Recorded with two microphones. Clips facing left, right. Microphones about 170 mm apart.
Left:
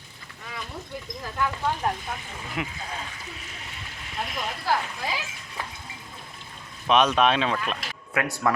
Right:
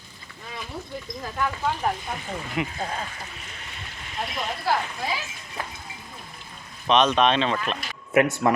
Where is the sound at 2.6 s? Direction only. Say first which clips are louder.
Right 3 dB; centre (ahead or behind).